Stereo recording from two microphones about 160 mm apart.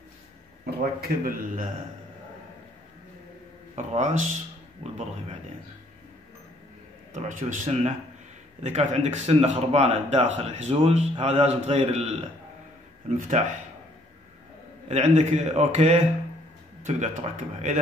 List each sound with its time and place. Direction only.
0.7 s speech: 70° right (ahead or behind)
3.7 s speech: 45° right (ahead or behind)
7.1 s speech: 50° right (ahead or behind)
14.9 s speech: 45° right (ahead or behind)